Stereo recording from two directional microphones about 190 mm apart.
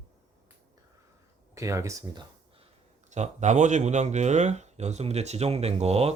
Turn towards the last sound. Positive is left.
turn(degrees=-35)  # may be behind; listen again after turning